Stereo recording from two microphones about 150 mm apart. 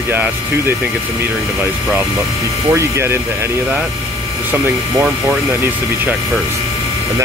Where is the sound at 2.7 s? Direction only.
15° right (ahead or behind).